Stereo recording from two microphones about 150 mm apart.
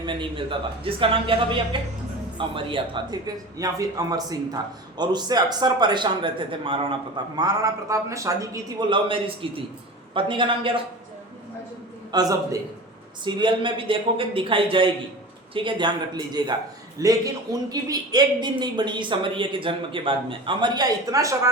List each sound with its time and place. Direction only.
0.0 s speech: 30° right (ahead or behind)
8.9 s speech: 35° right (ahead or behind)
12.1 s speech: 25° right (ahead or behind)